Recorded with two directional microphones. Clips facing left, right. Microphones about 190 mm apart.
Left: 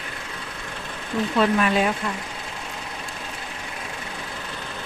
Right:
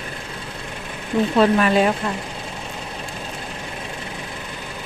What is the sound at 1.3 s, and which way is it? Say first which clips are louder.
Speech: right 4 dB; 35° right (ahead or behind).